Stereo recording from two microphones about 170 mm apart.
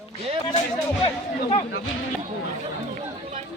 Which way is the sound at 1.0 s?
35° left (ahead or behind).